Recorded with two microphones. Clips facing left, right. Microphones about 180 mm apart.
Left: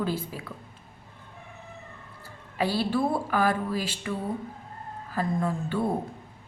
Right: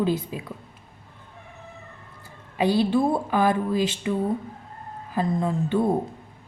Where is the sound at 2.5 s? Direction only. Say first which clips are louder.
Right 5 dB; 20° right (ahead or behind).